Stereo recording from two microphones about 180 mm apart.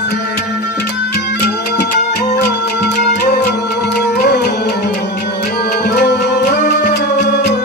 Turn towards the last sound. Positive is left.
turn(degrees=70)  # may be behind; listen again after turning